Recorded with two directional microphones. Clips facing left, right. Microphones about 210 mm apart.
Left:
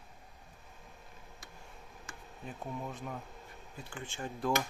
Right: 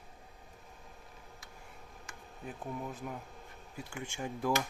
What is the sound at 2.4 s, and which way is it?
Speech, centre (ahead or behind).